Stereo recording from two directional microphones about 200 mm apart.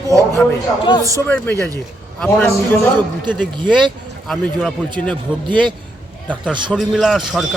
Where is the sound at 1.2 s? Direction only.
10° left (ahead or behind).